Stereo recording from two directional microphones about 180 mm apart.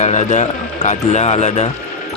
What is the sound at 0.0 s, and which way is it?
Speech, 40° left (ahead or behind).